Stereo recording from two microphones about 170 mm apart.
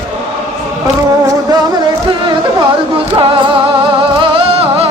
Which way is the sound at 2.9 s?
30° right (ahead or behind).